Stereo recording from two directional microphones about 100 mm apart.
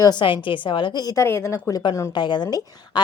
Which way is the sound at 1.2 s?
25° left (ahead or behind).